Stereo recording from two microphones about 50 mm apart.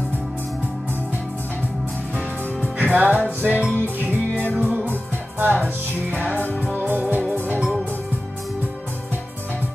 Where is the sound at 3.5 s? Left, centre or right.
Left.